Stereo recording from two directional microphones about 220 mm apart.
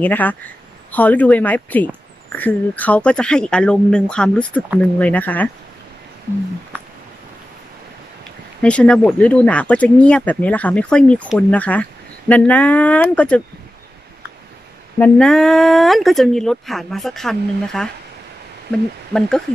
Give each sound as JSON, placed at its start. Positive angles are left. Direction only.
{"t": 0.0, "sound": "speech", "side_deg": 10}
{"t": 8.6, "sound": "speech", "side_deg": 5}
{"t": 15.0, "sound": "speech", "side_deg": 5}